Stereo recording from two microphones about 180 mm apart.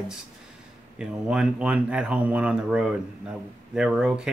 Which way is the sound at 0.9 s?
5° right (ahead or behind).